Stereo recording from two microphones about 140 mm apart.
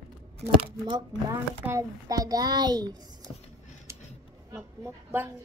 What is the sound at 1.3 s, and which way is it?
Speech, 20° right (ahead or behind).